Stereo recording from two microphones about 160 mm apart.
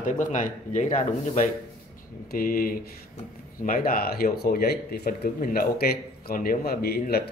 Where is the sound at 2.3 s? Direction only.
65° left (ahead or behind).